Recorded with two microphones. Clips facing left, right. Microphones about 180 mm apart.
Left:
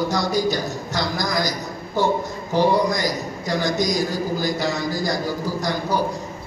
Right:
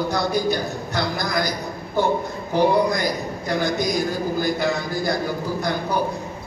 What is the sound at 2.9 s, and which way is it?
A man's voice, 55° right (ahead or behind).